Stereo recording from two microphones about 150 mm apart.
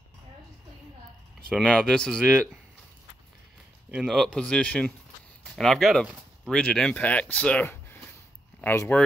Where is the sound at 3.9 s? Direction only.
Centre (ahead or behind).